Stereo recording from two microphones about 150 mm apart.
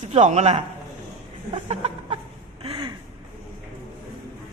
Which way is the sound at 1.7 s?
45° right (ahead or behind).